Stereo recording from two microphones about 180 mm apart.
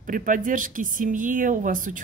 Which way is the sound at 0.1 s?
45° right (ahead or behind).